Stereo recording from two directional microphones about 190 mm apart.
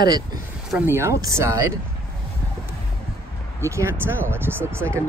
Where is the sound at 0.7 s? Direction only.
10° right (ahead or behind).